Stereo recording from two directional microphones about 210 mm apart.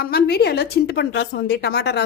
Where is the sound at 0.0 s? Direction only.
50° left (ahead or behind).